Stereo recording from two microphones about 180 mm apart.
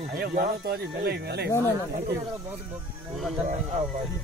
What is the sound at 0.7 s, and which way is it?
Speech, 60° right (ahead or behind).